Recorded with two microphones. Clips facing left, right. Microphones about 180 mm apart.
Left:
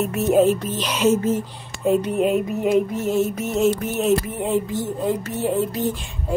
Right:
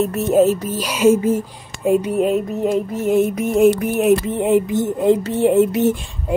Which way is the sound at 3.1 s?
60° right (ahead or behind).